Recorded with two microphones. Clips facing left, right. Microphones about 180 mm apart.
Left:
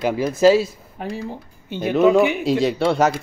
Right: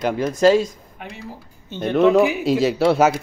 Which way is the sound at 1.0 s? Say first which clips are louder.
Left 7 dB; 35° left (ahead or behind).